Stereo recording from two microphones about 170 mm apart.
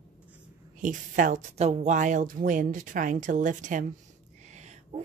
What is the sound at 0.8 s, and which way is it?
A woman's voice, 50° right (ahead or behind).